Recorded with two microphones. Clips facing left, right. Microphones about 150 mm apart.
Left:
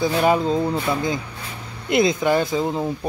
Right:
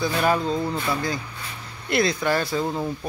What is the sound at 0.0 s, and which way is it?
Speech, 20° left (ahead or behind).